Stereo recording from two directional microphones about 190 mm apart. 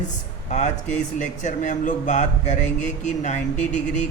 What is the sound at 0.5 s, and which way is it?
Speech, 40° left (ahead or behind).